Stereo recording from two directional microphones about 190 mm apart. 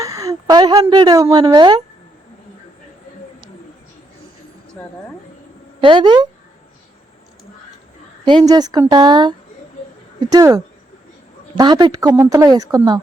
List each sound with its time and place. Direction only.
0.0 s a woman's voice: 20° right (ahead or behind)
4.8 s speech: 10° left (ahead or behind)
5.8 s a woman's voice: 25° right (ahead or behind)
8.2 s a woman's voice: 20° right (ahead or behind)